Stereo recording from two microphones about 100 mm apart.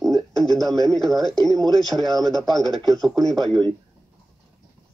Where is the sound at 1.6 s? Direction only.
40° right (ahead or behind).